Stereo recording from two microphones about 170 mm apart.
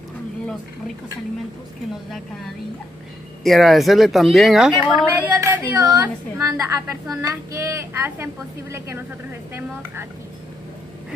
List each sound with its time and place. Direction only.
2.0 s a woman's voice: centre (ahead or behind)